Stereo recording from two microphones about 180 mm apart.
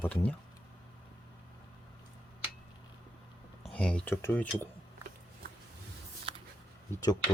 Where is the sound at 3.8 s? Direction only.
5° left (ahead or behind).